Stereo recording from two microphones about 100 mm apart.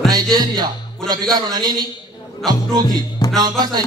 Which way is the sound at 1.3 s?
45° right (ahead or behind).